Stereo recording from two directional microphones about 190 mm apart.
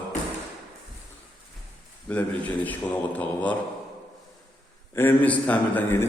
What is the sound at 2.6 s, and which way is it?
Speech, 10° left (ahead or behind).